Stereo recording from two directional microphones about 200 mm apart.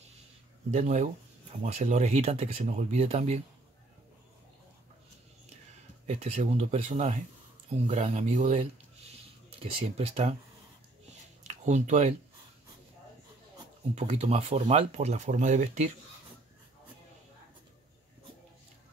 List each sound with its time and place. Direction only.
0.7 s speech: 35° right (ahead or behind)
6.0 s speech: 30° right (ahead or behind)
11.4 s speech: 35° right (ahead or behind)
13.9 s speech: 30° right (ahead or behind)